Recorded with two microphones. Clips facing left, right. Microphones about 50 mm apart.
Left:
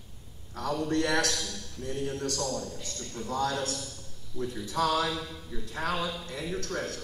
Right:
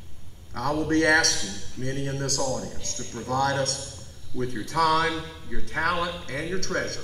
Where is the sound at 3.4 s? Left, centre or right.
Right.